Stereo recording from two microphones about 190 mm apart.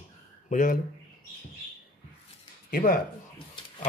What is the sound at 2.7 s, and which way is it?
Speech, 50° left (ahead or behind).